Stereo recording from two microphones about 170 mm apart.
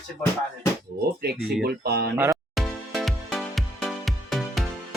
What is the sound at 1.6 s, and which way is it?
Speech, 70° right (ahead or behind).